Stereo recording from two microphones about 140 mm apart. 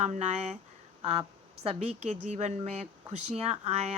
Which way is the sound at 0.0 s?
55° right (ahead or behind).